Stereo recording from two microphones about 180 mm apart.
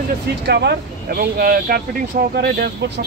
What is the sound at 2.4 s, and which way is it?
Speech, 70° right (ahead or behind).